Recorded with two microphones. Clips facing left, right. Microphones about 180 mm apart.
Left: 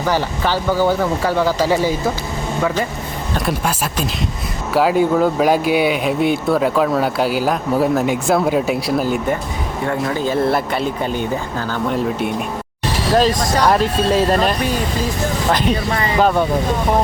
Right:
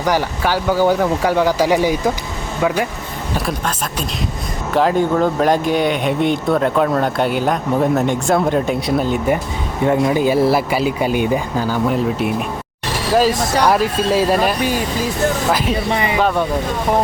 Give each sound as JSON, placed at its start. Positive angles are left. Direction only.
{"t": 0.0, "sound": "speech", "side_deg": -10}
{"t": 4.7, "sound": "speech", "side_deg": 5}
{"t": 9.8, "sound": "speech", "side_deg": -20}
{"t": 11.9, "sound": "speech", "side_deg": 0}
{"t": 15.5, "sound": "speech", "side_deg": -5}
{"t": 15.9, "sound": "speech", "side_deg": -15}